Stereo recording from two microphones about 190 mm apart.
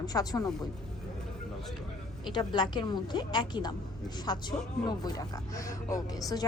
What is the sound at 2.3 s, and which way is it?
A woman's voice, 25° left (ahead or behind).